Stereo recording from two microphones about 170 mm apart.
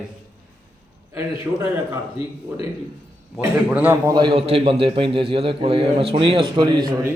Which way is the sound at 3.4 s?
10° right (ahead or behind).